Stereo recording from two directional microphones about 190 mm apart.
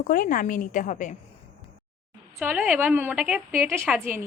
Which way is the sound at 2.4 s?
10° right (ahead or behind).